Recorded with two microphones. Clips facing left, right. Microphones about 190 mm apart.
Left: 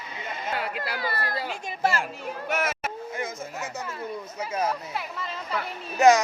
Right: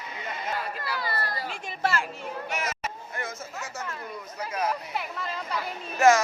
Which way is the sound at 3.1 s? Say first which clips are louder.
Left 3 dB; 15° left (ahead or behind).